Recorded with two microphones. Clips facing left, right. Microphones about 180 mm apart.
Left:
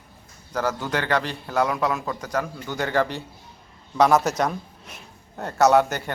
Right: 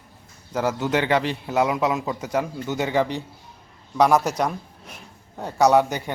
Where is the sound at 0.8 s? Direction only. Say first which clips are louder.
Right 5 dB; 20° right (ahead or behind).